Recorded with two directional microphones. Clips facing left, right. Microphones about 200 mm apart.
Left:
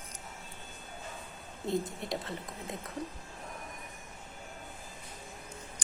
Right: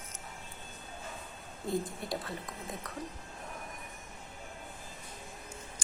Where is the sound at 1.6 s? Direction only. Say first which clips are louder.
Left 1 dB; 20° left (ahead or behind).